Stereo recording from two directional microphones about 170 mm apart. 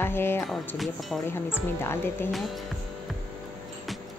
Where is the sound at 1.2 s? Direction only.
15° left (ahead or behind).